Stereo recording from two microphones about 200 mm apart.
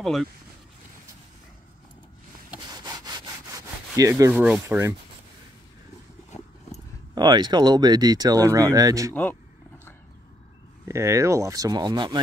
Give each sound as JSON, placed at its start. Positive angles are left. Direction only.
{"t": 0.0, "sound": "speech", "side_deg": 0}
{"t": 2.8, "sound": "sawing", "side_deg": -20}
{"t": 4.1, "sound": "speech", "side_deg": -5}
{"t": 7.2, "sound": "speech", "side_deg": -20}
{"t": 9.1, "sound": "speech", "side_deg": 10}
{"t": 10.9, "sound": "speech", "side_deg": -15}